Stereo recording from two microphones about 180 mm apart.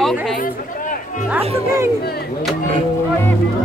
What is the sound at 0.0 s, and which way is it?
Chatter, centre (ahead or behind).